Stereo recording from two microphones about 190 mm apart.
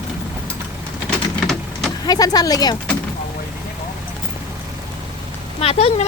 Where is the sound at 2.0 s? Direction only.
20° left (ahead or behind).